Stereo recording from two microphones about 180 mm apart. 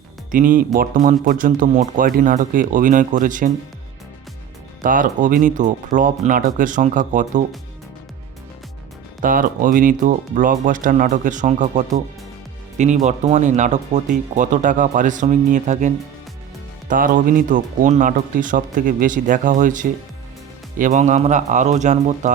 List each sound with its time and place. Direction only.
0.3 s speech: 50° right (ahead or behind)
4.8 s speech: 50° right (ahead or behind)
9.2 s speech: 50° right (ahead or behind)
16.9 s speech: 50° right (ahead or behind)